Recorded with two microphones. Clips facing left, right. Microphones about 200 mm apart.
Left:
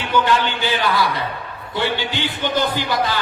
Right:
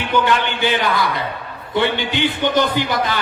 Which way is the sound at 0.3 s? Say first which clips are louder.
Right 1 dB; 20° right (ahead or behind).